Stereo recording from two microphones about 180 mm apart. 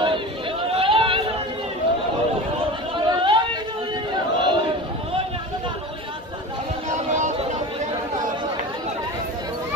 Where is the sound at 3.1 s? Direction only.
25° right (ahead or behind).